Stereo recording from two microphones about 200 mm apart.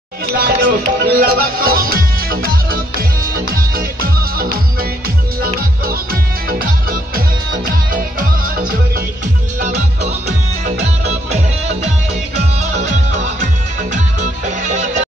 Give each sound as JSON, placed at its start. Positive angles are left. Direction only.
{"t": 0.4, "sound": "music", "side_deg": -45}
{"t": 9.6, "sound": "music", "side_deg": -35}